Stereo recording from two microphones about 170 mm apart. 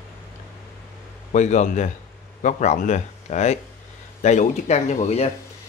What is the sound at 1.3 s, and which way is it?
Speech, 45° left (ahead or behind).